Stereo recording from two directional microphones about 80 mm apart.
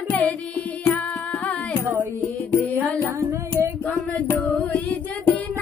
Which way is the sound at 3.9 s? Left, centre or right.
Centre.